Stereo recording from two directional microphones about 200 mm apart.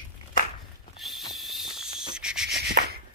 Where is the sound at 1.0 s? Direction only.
Centre (ahead or behind).